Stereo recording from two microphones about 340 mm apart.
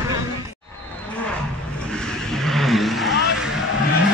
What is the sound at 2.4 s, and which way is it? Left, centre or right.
Vehicle, centre.